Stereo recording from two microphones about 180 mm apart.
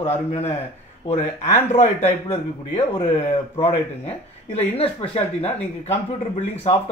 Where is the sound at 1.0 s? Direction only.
35° left (ahead or behind).